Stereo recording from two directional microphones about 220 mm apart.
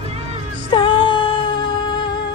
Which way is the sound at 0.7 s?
20° left (ahead or behind).